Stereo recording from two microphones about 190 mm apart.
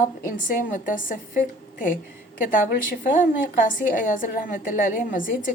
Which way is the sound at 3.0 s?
45° left (ahead or behind).